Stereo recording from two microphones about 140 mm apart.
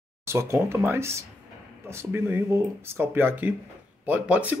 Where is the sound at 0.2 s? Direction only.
20° right (ahead or behind).